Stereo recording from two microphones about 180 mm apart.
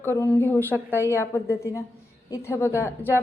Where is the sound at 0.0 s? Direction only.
10° left (ahead or behind).